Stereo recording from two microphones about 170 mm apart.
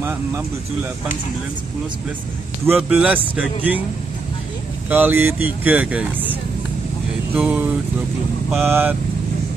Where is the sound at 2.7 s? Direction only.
10° right (ahead or behind).